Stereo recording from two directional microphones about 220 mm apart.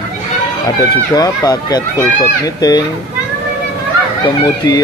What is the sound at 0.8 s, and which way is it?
Speech, 15° left (ahead or behind).